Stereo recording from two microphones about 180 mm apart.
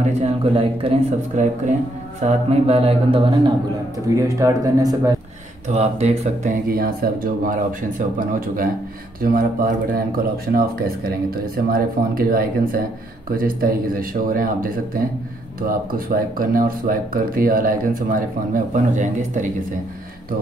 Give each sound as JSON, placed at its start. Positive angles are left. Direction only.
{"t": 0.0, "sound": "speech", "side_deg": -35}
{"t": 4.1, "sound": "speech", "side_deg": -15}
{"t": 5.7, "sound": "speech", "side_deg": -35}